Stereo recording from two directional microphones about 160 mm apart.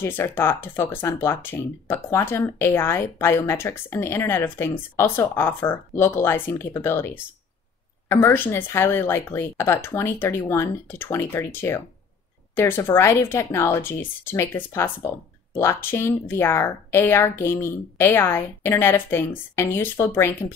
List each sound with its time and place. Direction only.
0.0 s speech: 15° left (ahead or behind)